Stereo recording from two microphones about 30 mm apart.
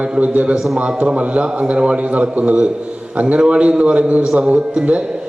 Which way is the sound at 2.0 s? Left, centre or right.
Right.